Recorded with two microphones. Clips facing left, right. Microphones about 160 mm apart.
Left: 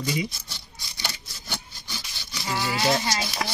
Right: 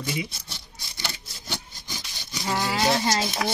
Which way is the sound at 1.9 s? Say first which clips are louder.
Right 1 dB; 20° right (ahead or behind).